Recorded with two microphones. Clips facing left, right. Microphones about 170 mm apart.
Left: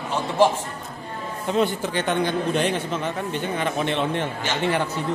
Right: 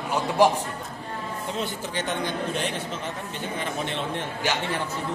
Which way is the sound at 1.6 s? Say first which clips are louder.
Left 10 dB; 60° left (ahead or behind).